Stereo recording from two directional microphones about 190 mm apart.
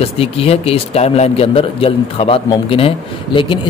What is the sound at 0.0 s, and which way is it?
A man's voice, 30° left (ahead or behind).